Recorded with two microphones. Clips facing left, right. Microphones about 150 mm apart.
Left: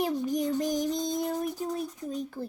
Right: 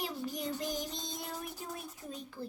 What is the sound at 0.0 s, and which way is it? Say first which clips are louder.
Child singing: left 10 dB; 45° left (ahead or behind).